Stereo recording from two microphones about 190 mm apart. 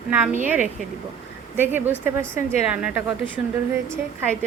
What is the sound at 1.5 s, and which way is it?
A woman's voice, 10° right (ahead or behind).